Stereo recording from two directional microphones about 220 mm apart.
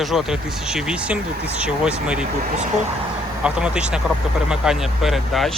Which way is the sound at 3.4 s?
5° right (ahead or behind).